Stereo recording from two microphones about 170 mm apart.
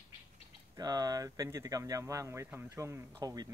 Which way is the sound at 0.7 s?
25° right (ahead or behind).